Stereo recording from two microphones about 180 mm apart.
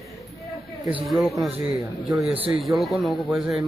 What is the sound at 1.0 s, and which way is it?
Speech, centre (ahead or behind).